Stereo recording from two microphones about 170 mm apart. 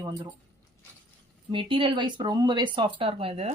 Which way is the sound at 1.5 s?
30° right (ahead or behind).